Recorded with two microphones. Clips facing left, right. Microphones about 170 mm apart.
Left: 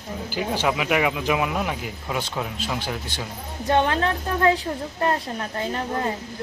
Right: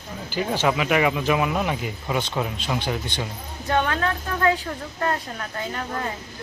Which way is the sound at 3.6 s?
30° left (ahead or behind).